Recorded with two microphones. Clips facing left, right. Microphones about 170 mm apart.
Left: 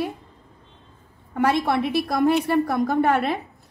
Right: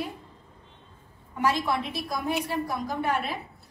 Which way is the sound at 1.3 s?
65° left (ahead or behind).